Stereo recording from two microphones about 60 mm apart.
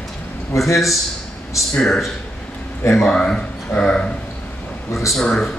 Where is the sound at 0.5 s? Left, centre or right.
Left.